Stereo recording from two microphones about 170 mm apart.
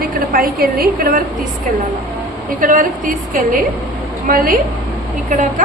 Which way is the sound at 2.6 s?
55° right (ahead or behind).